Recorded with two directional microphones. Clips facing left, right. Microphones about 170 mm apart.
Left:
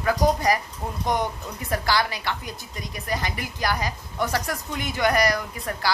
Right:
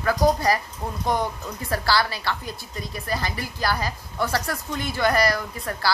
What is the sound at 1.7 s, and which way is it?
A woman's voice, 15° left (ahead or behind).